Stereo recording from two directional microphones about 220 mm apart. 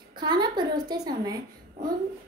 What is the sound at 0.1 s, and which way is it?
A woman's voice, 20° right (ahead or behind).